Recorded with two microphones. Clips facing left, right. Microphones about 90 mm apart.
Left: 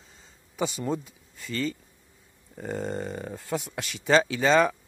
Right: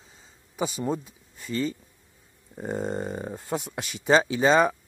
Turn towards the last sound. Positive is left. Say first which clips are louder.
# right 1 dB
turn(degrees=-20)  # may be behind; listen again after turning